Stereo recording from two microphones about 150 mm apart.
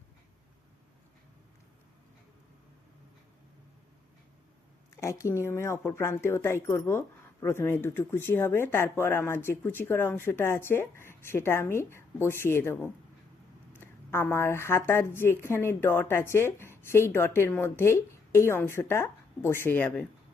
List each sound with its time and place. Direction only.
4.9 s a woman's voice: 20° left (ahead or behind)